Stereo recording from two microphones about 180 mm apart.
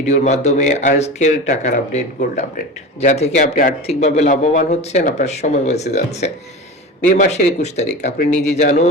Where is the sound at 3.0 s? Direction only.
40° left (ahead or behind).